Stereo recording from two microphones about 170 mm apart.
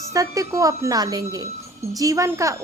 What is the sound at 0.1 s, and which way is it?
A woman's voice, 20° right (ahead or behind).